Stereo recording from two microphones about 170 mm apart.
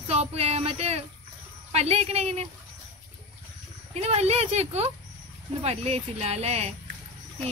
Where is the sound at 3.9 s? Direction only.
40° right (ahead or behind).